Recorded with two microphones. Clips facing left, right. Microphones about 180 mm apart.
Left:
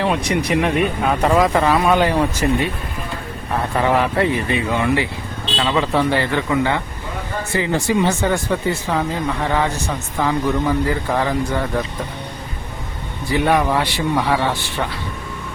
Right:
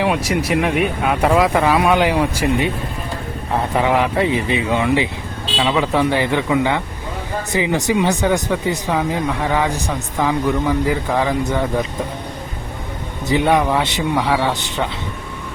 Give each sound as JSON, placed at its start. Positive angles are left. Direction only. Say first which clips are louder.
{"t": 0.0, "sound": "speech", "louder": "right 1 dB", "side_deg": -5}
{"t": 13.2, "sound": "speech", "louder": "right 1 dB", "side_deg": -20}